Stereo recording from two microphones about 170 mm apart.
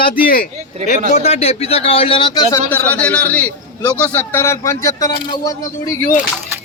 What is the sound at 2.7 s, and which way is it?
A man's voice, 10° left (ahead or behind).